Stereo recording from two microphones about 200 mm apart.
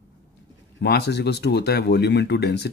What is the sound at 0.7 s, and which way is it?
Speech, 55° left (ahead or behind).